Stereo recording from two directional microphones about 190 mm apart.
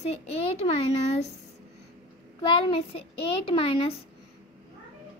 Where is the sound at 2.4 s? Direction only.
25° left (ahead or behind).